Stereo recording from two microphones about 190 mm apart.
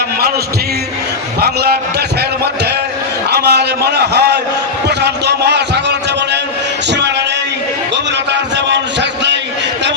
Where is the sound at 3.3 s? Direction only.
60° right (ahead or behind).